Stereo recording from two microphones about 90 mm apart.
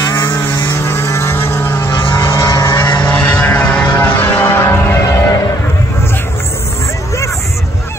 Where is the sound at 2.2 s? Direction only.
30° left (ahead or behind).